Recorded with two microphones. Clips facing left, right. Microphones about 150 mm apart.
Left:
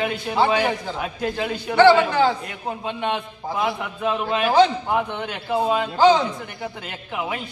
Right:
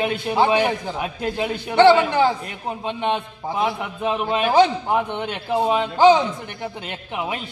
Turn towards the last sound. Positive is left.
turn(degrees=-20)  # may be behind; listen again after turning